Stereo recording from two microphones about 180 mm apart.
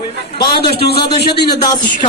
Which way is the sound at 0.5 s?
65° left (ahead or behind).